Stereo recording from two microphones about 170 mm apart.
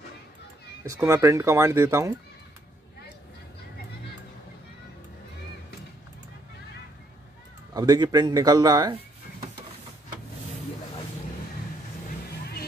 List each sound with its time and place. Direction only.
0.8 s speech: 15° right (ahead or behind)
7.7 s speech: 25° right (ahead or behind)